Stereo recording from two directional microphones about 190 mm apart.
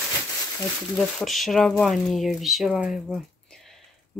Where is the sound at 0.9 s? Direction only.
Centre (ahead or behind).